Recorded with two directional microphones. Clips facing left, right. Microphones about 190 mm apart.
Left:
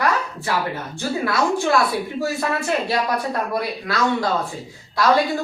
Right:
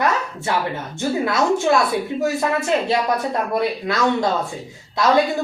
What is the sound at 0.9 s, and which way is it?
A man's voice, 20° right (ahead or behind).